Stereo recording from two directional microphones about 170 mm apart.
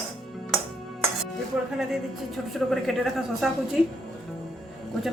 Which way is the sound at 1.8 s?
Centre (ahead or behind).